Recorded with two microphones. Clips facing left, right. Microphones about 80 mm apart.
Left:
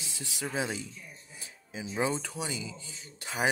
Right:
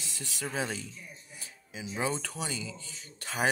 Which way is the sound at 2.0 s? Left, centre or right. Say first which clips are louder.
Left 2 dB; left.